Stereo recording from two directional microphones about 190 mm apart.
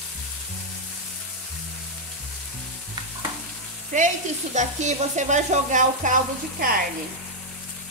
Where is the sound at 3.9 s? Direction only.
40° right (ahead or behind).